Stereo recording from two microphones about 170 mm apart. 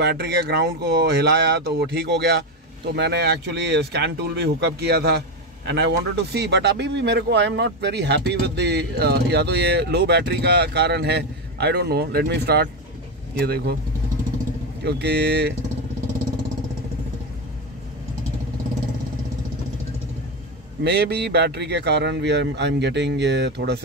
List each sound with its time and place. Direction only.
0.0 s speech: 75° right (ahead or behind)
14.8 s speech: 75° right (ahead or behind)
20.8 s speech: 75° right (ahead or behind)